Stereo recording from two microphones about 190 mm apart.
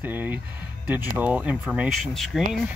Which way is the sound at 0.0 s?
10° right (ahead or behind).